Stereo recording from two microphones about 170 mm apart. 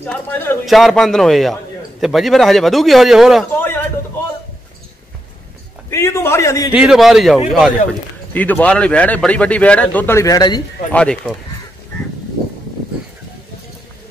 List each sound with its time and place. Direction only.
0.0 s speech: 10° left (ahead or behind)
0.7 s a man's voice: centre (ahead or behind)
5.9 s speech: 15° left (ahead or behind)
6.7 s a man's voice: 5° right (ahead or behind)
8.3 s speech: 10° left (ahead or behind)
10.9 s speech: 5° left (ahead or behind)